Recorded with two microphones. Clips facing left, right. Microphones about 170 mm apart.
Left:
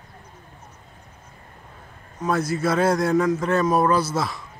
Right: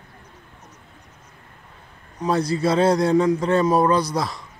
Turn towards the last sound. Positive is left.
turn(degrees=5)  # may be behind; listen again after turning